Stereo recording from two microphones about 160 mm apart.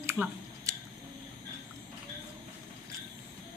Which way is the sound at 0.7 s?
20° right (ahead or behind).